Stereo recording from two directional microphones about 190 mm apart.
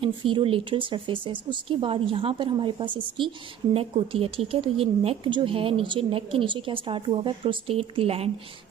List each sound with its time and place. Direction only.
0.0 s speech: 30° right (ahead or behind)